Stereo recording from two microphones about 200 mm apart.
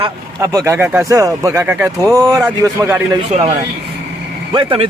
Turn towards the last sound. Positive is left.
turn(degrees=-25)  # may be behind; listen again after turning